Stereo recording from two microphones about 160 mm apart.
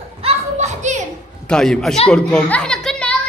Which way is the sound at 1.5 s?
5° left (ahead or behind).